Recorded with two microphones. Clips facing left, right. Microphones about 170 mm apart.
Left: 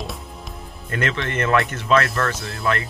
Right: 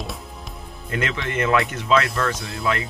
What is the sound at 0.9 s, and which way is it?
Speech, 10° right (ahead or behind).